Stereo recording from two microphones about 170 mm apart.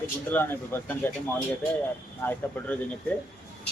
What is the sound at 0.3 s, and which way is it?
Speech, 10° left (ahead or behind).